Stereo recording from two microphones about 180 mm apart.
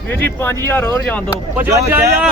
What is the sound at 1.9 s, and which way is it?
Speech, 10° right (ahead or behind).